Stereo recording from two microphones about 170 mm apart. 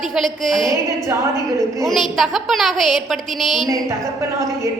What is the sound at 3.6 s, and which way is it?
A woman's voice, 20° right (ahead or behind).